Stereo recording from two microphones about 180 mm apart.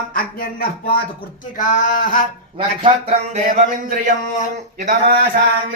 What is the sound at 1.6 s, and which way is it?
Speech, 45° left (ahead or behind).